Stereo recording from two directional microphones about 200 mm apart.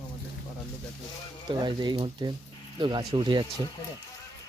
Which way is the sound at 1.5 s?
20° right (ahead or behind).